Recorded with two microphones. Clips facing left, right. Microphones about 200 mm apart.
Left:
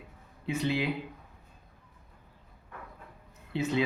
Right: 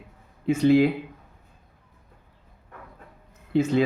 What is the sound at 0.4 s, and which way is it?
Speech, 50° right (ahead or behind).